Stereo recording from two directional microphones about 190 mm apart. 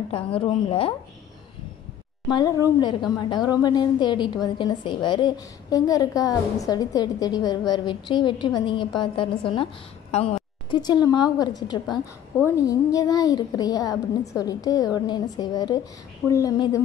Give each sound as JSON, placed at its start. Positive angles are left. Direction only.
{"t": 0.1, "sound": "a woman's voice", "side_deg": 30}
{"t": 2.8, "sound": "a woman's voice", "side_deg": 25}